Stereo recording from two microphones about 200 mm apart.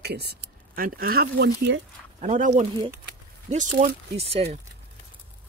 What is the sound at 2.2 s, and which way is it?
Speech, 35° right (ahead or behind).